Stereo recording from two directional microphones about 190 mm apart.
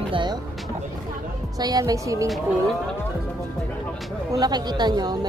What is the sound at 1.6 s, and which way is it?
Speech, 20° right (ahead or behind).